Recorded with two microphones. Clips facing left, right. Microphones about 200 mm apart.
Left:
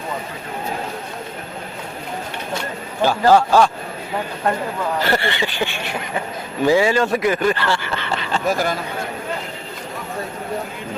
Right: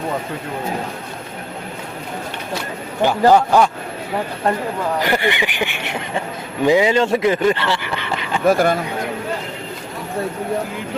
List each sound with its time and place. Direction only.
3.0 s speech: 20° right (ahead or behind)
4.9 s speech: 15° right (ahead or behind)
8.4 s speech: 55° right (ahead or behind)